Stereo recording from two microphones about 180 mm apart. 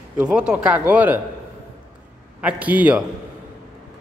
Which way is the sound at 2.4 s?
10° right (ahead or behind).